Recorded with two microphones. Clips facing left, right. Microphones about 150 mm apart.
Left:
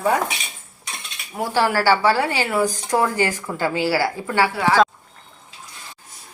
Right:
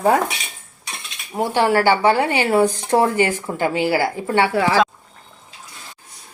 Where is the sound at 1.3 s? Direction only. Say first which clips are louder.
Right 3 dB; 20° right (ahead or behind).